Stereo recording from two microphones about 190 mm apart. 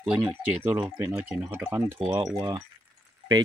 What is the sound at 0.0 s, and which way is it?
Speech, 5° right (ahead or behind).